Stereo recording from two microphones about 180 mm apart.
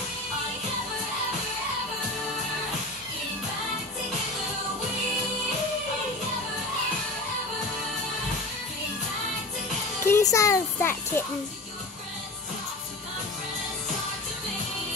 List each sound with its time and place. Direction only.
10.0 s a child's voice: 15° left (ahead or behind)